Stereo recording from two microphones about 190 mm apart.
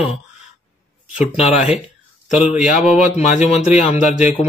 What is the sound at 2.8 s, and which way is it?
Speech, 5° right (ahead or behind).